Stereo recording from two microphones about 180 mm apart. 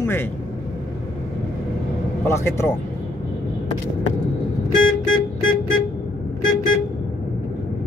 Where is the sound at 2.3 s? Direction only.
15° left (ahead or behind).